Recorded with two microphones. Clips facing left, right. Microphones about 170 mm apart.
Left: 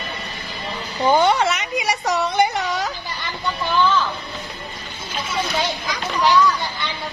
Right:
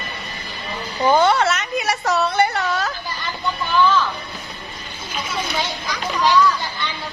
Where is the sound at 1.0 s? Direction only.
15° left (ahead or behind).